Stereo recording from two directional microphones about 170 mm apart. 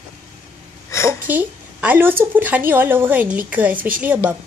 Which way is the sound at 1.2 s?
10° right (ahead or behind).